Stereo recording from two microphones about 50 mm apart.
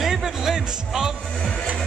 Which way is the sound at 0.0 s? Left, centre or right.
Centre.